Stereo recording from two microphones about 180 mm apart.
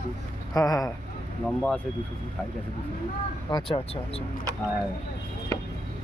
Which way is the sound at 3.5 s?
25° left (ahead or behind).